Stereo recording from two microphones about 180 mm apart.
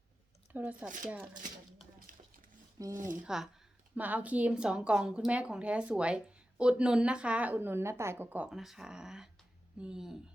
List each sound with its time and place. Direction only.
0.5 s speech: 10° right (ahead or behind)
2.1 s a sound: 50° right (ahead or behind)
2.7 s speech: 20° right (ahead or behind)
3.2 s speech: 5° right (ahead or behind)